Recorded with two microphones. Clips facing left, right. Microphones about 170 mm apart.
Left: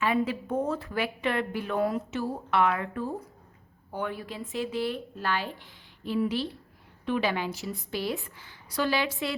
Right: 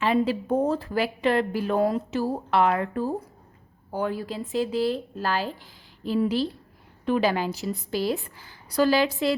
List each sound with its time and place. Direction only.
0.0 s a woman's voice: 30° right (ahead or behind)